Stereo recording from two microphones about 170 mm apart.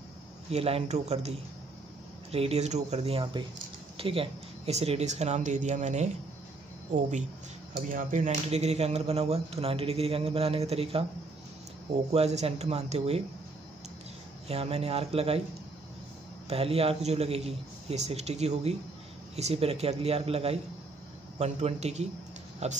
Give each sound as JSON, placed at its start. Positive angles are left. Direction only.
{"t": 0.5, "sound": "speech", "side_deg": -35}
{"t": 2.3, "sound": "speech", "side_deg": -35}
{"t": 7.7, "sound": "speech", "side_deg": -50}
{"t": 12.1, "sound": "speech", "side_deg": -40}
{"t": 14.5, "sound": "speech", "side_deg": -35}
{"t": 16.4, "sound": "speech", "side_deg": -35}